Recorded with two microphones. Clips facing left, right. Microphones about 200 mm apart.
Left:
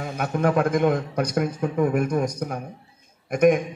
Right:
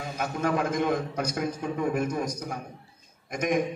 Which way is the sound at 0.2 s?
55° left (ahead or behind).